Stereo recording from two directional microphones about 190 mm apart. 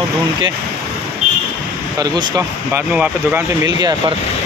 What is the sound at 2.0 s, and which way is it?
Speech, 15° right (ahead or behind).